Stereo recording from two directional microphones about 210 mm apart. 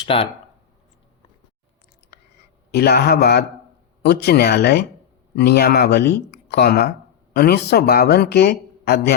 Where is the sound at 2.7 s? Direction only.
50° left (ahead or behind).